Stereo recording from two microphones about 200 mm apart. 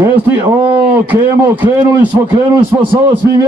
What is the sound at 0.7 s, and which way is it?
A man's voice, 10° right (ahead or behind).